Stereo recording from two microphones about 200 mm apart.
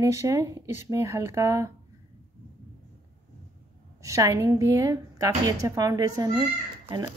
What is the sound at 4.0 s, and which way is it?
A woman's voice, 15° right (ahead or behind).